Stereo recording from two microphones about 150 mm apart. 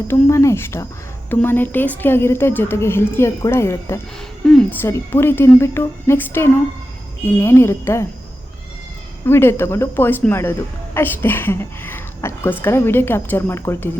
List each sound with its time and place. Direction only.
0.1 s a woman's voice: 20° left (ahead or behind)
9.2 s a woman's voice: 15° left (ahead or behind)